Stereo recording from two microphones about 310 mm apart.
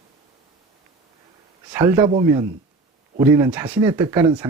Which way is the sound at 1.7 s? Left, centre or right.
Centre.